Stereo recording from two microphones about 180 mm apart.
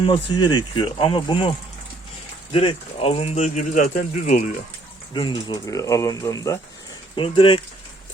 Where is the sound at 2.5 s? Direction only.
30° left (ahead or behind).